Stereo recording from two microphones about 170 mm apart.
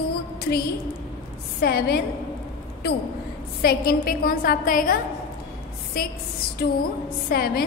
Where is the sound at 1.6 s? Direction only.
65° left (ahead or behind).